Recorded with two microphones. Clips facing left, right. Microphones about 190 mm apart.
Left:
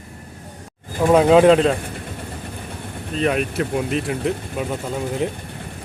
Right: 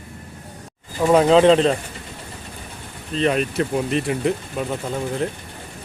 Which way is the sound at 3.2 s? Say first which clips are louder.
Right 1 dB; 5° left (ahead or behind).